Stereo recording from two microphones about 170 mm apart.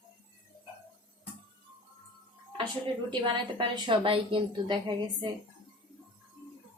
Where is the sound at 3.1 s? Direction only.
25° right (ahead or behind).